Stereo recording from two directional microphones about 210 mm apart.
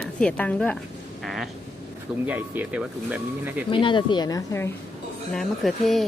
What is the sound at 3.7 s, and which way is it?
Speech, 25° left (ahead or behind).